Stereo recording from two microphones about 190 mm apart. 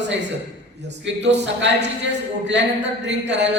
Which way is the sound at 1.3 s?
65° right (ahead or behind).